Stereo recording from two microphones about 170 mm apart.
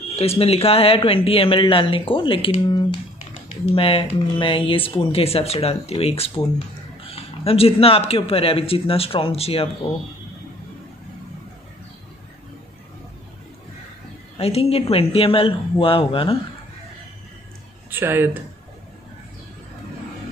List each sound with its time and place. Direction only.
0.1 s speech: 35° left (ahead or behind)
14.3 s speech: 35° left (ahead or behind)
17.8 s speech: 10° right (ahead or behind)